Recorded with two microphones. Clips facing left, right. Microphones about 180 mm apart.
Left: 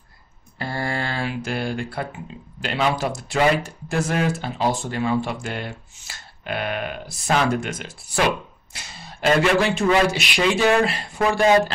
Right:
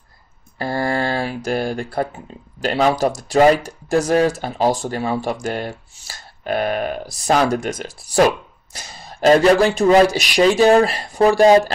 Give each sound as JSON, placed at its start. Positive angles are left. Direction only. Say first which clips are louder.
{"t": 0.6, "sound": "speech", "louder": "right 6 dB", "side_deg": -40}